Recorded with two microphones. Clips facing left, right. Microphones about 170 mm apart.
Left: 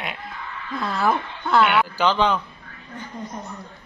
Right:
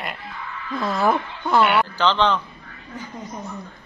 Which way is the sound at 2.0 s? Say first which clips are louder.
Even; 10° left (ahead or behind).